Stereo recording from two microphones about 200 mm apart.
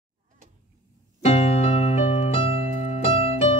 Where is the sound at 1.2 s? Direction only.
30° left (ahead or behind).